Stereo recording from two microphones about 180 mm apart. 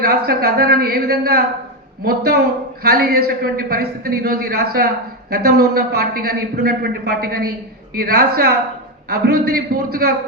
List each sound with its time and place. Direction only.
0.0 s a man's voice: 60° right (ahead or behind)